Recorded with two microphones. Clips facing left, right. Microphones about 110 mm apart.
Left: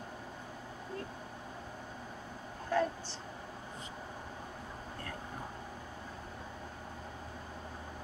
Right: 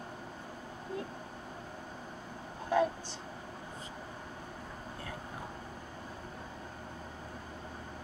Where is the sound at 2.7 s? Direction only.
10° right (ahead or behind).